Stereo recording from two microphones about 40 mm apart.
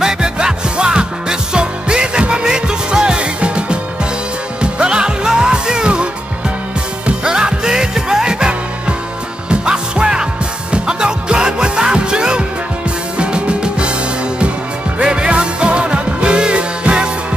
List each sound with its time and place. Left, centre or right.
0.0 s music: centre
7.1 s music: centre
15.0 s music: right